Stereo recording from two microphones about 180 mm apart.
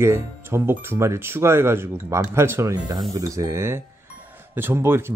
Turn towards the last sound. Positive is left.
turn(degrees=-15)  # may be behind; listen again after turning